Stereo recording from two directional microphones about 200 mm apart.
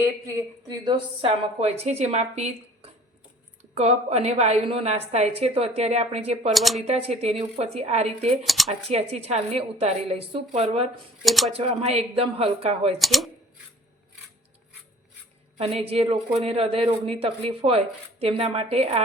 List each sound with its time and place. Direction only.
0.0 s speech: 15° right (ahead or behind)
1.5 s a woman's voice: 30° right (ahead or behind)
3.8 s a woman's voice: 30° right (ahead or behind)
6.5 s speech: centre (ahead or behind)
6.8 s a woman's voice: 30° right (ahead or behind)
8.4 s speech: centre (ahead or behind)
8.9 s a woman's voice: 30° right (ahead or behind)
11.2 s speech: centre (ahead or behind)
11.5 s a woman's voice: 30° right (ahead or behind)
13.0 s speech: centre (ahead or behind)
15.5 s speech: 30° right (ahead or behind)